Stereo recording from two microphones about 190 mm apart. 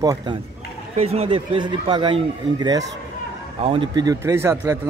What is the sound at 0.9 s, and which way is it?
Speech, 30° right (ahead or behind).